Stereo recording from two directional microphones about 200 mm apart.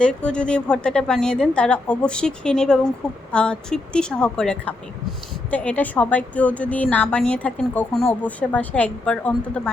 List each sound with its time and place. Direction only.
0.0 s a woman's voice: 5° left (ahead or behind)